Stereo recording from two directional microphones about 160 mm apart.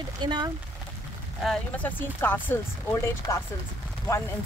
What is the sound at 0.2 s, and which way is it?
Speech, 25° right (ahead or behind).